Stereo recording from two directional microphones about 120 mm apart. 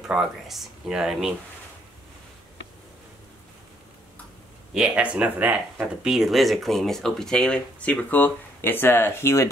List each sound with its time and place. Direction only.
0.0 s speech: 5° right (ahead or behind)
4.7 s speech: 10° right (ahead or behind); by 9.5 s 25° left (ahead or behind)